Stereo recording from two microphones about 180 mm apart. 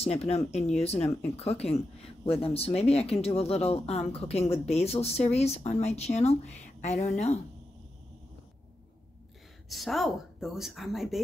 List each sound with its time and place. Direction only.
0.3 s speech: 35° left (ahead or behind)
9.7 s a woman's voice: centre (ahead or behind)